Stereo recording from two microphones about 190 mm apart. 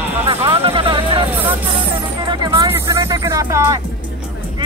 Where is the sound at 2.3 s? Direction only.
25° right (ahead or behind).